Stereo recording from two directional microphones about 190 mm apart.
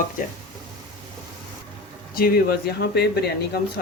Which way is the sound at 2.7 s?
55° left (ahead or behind).